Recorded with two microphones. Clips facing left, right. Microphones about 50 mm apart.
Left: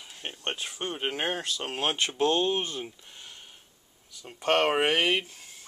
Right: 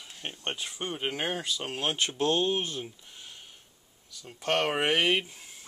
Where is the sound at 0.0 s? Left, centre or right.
Centre.